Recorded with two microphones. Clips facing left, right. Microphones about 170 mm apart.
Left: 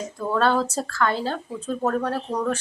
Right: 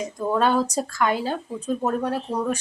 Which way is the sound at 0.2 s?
15° right (ahead or behind).